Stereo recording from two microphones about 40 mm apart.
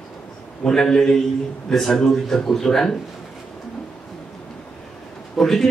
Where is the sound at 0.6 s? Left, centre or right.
Centre.